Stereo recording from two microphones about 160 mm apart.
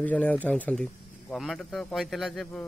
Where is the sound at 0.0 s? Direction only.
10° left (ahead or behind).